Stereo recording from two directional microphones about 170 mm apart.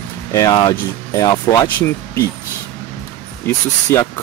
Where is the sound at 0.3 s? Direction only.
20° left (ahead or behind).